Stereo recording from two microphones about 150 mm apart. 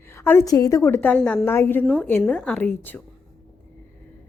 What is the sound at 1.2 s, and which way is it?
Speech, centre (ahead or behind).